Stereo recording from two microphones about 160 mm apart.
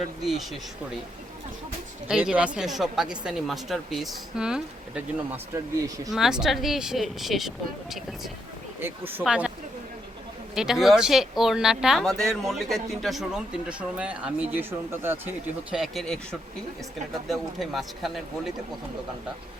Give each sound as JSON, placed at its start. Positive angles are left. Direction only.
{"t": 0.0, "sound": "a woman's voice", "side_deg": 0}
{"t": 2.0, "sound": "a woman's voice", "side_deg": -5}
{"t": 6.1, "sound": "a woman's voice", "side_deg": 0}
{"t": 8.8, "sound": "a woman's voice", "side_deg": -10}
{"t": 10.5, "sound": "a woman's voice", "side_deg": -5}
{"t": 15.7, "sound": "a woman's voice", "side_deg": 0}